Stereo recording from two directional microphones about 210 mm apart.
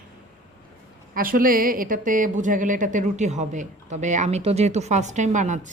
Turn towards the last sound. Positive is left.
turn(degrees=-35)  # may be behind; listen again after turning